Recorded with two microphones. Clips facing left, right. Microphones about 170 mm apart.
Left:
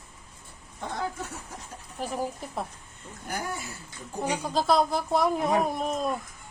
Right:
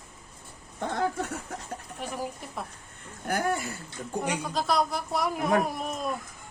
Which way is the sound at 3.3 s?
60° right (ahead or behind).